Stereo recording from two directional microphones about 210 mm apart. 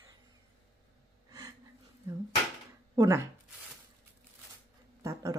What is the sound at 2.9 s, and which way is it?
Speech, 15° right (ahead or behind).